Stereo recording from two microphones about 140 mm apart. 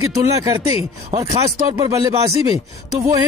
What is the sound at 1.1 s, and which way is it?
Speech, 50° right (ahead or behind).